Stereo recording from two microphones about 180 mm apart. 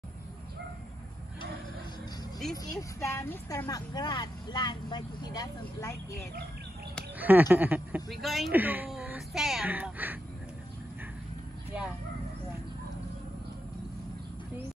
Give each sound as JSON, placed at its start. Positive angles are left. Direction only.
{"t": 2.5, "sound": "speech", "side_deg": 20}
{"t": 7.2, "sound": "speech", "side_deg": -10}